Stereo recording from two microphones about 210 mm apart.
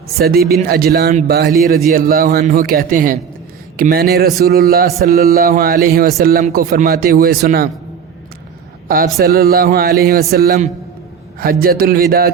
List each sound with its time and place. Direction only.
0.2 s a man's voice: 45° right (ahead or behind)
9.1 s a man's voice: 45° right (ahead or behind)